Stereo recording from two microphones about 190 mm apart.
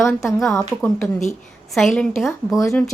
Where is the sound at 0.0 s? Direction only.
Centre (ahead or behind).